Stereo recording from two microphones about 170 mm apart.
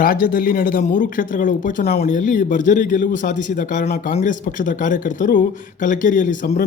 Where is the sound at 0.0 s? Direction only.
55° left (ahead or behind).